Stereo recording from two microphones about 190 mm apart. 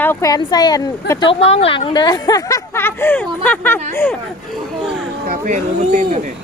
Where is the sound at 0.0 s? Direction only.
15° left (ahead or behind).